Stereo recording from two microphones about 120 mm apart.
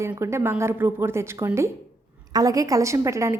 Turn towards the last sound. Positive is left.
turn(degrees=-25)  # may be behind; listen again after turning